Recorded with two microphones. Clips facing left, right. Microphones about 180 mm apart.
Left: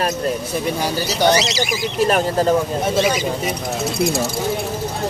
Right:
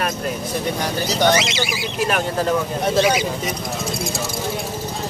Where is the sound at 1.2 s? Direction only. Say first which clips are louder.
Left 2 dB; 35° left (ahead or behind).